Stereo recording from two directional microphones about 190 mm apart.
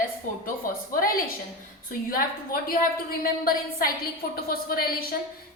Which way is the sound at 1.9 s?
50° left (ahead or behind).